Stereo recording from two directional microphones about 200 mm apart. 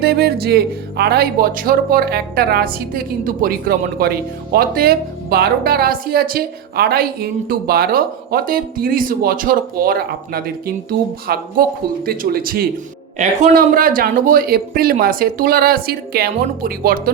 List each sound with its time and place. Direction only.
0.0 s speech: 50° right (ahead or behind)